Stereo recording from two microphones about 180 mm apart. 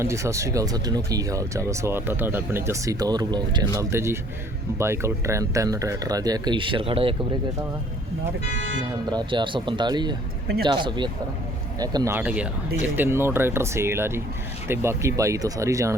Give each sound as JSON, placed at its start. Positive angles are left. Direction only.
{"t": 0.0, "sound": "speech", "side_deg": -15}
{"t": 9.0, "sound": "speech", "side_deg": -25}
{"t": 12.1, "sound": "speech", "side_deg": -5}